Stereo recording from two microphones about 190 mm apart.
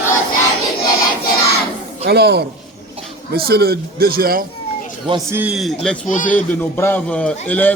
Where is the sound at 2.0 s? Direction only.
60° right (ahead or behind).